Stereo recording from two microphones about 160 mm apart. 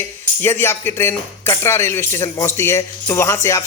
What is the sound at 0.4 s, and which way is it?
A man's voice, 15° left (ahead or behind).